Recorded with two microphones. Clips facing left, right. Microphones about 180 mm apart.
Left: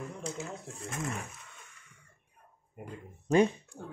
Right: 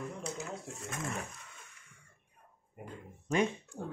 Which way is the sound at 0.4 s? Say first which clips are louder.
Left 1 dB; 30° left (ahead or behind).